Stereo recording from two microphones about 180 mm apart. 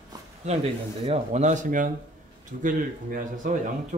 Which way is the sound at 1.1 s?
40° right (ahead or behind).